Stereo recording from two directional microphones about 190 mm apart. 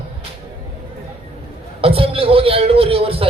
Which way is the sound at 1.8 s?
30° right (ahead or behind).